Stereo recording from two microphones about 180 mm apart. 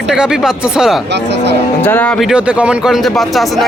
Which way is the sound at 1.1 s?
70° right (ahead or behind).